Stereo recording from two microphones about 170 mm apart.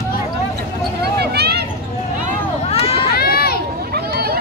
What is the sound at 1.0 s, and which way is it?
Vehicle, 70° right (ahead or behind).